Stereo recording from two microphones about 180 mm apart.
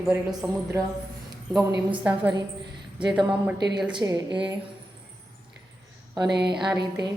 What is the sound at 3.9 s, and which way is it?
Speech, 20° right (ahead or behind).